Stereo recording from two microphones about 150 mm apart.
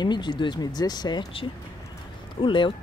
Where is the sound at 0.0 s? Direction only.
30° left (ahead or behind).